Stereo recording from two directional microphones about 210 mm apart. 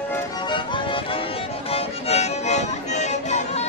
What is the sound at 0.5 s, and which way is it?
Music, 25° left (ahead or behind).